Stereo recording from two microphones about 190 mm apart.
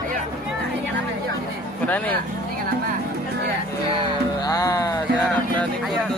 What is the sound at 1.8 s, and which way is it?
Speech, 10° left (ahead or behind).